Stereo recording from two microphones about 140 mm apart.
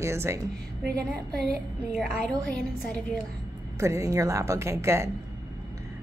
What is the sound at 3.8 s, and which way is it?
A woman's voice, 20° right (ahead or behind).